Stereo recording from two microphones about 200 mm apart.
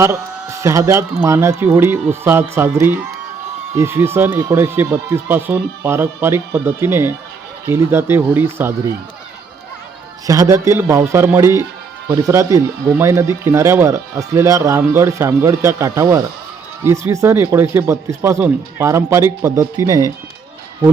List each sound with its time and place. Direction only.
0.0 s speech: 15° right (ahead or behind)
10.2 s speech: 15° right (ahead or behind)